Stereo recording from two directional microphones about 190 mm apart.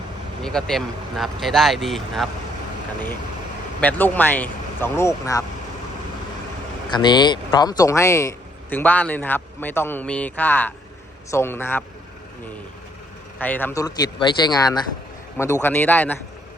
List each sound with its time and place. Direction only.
0.4 s speech: centre (ahead or behind)
3.8 s a man's voice: 10° left (ahead or behind)
6.9 s a man's voice: 25° left (ahead or behind)
13.4 s speech: 10° left (ahead or behind)
15.6 s a man's voice: 10° left (ahead or behind)